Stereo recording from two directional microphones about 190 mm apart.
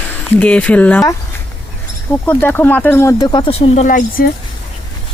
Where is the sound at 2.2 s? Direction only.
10° left (ahead or behind); by 4.0 s 40° left (ahead or behind).